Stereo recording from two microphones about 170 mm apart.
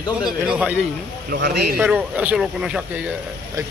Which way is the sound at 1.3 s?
70° right (ahead or behind).